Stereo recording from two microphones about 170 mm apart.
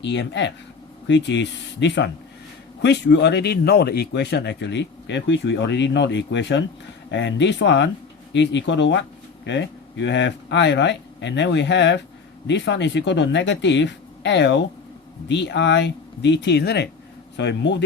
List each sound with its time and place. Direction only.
0.0 s speech: 90° left
17.3 s speech: 90° left